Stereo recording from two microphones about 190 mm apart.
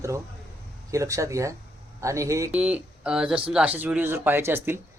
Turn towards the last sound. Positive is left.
turn(degrees=-10)  # may be behind; listen again after turning